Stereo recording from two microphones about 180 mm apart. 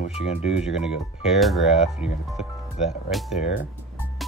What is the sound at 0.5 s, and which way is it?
Speech, 5° right (ahead or behind).